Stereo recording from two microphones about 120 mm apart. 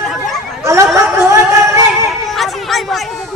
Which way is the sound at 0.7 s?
25° right (ahead or behind).